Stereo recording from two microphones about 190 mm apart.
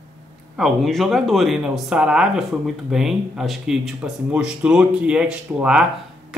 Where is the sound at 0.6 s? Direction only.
Centre (ahead or behind).